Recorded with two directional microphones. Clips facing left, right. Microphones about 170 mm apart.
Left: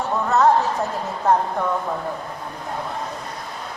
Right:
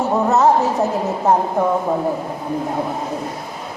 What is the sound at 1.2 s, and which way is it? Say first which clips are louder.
Speech: right 2 dB; 20° right (ahead or behind).